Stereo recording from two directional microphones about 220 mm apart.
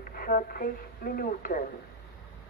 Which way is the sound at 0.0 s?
40° left (ahead or behind).